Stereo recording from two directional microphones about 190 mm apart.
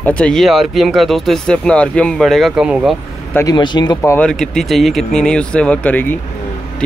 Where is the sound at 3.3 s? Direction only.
20° left (ahead or behind).